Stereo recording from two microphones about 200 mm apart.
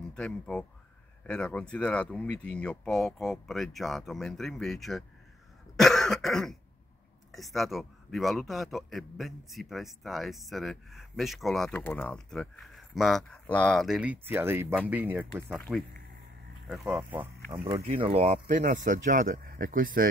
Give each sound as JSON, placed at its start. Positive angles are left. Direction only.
{"t": 0.1, "sound": "a man's voice", "side_deg": 5}
{"t": 5.8, "sound": "cough", "side_deg": 0}
{"t": 7.3, "sound": "a man's voice", "side_deg": 0}
{"t": 15.5, "sound": "a man's voice", "side_deg": 0}
{"t": 17.2, "sound": "speech", "side_deg": -15}
{"t": 17.8, "sound": "speech", "side_deg": -30}